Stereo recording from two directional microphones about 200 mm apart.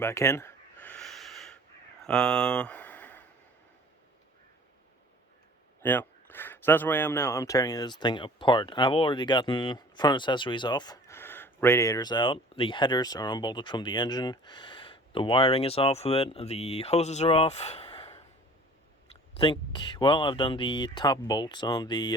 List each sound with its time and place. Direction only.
0.0 s a sound: 15° left (ahead or behind)
5.8 s speech: 10° left (ahead or behind)
19.3 s speech: 25° left (ahead or behind)